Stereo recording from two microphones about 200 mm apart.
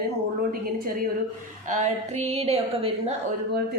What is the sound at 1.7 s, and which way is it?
A woman's voice, 35° right (ahead or behind).